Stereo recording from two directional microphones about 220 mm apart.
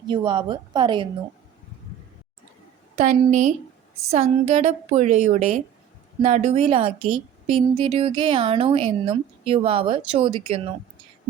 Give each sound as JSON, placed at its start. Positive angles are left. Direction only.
{"t": 0.1, "sound": "a woman's voice", "side_deg": -20}
{"t": 2.9, "sound": "a woman's voice", "side_deg": -30}